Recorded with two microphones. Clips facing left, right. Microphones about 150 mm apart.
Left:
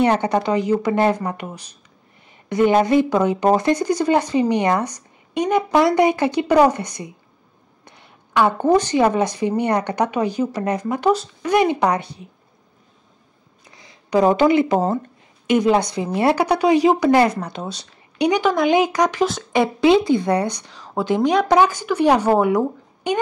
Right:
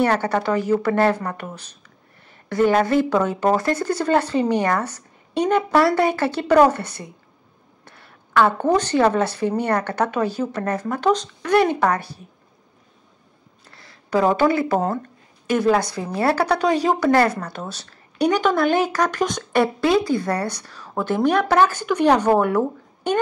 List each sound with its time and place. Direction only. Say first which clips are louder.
0.0 s a woman's voice: left 2 dB; 20° left (ahead or behind)
13.7 s a sound: left 1 dB; 15° left (ahead or behind)
15.4 s speech: left 2 dB; 20° left (ahead or behind)